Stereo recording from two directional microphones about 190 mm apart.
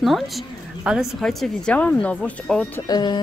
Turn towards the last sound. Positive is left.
turn(degrees=20)  # may be behind; listen again after turning